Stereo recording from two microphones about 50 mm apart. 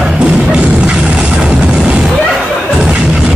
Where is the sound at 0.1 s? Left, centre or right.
Right.